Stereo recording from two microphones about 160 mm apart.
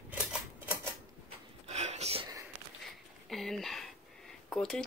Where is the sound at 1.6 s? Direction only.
45° right (ahead or behind).